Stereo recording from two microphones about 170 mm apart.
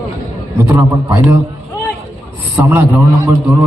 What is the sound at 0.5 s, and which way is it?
Speech, 15° right (ahead or behind).